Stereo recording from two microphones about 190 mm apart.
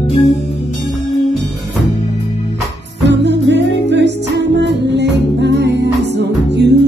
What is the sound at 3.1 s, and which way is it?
Music, 65° right (ahead or behind).